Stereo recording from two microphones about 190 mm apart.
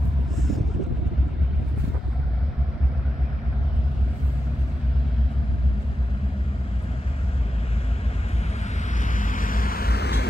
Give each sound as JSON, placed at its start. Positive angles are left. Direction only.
{"t": 9.0, "sound": "vehicle", "side_deg": 45}